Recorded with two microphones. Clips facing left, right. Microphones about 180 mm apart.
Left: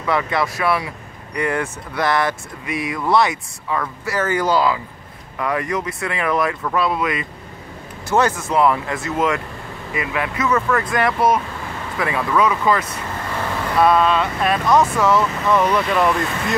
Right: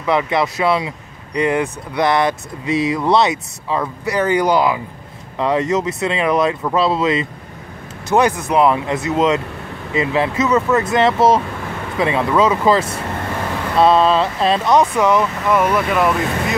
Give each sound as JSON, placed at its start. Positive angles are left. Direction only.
{"t": 0.0, "sound": "speech", "side_deg": -20}